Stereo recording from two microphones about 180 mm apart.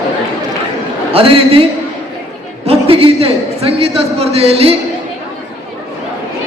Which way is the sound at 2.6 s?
35° right (ahead or behind).